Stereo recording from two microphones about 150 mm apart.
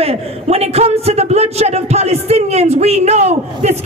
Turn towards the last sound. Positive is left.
turn(degrees=-45)  # may be behind; listen again after turning